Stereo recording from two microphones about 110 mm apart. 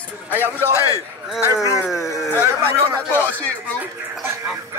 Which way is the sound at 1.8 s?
5° right (ahead or behind).